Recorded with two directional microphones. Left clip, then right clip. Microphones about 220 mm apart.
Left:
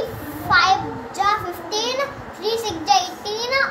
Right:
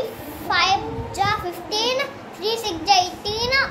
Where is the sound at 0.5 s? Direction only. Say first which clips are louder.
Left 3 dB; 25° right (ahead or behind).